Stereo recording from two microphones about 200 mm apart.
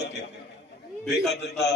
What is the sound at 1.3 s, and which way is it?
Speech, 60° left (ahead or behind).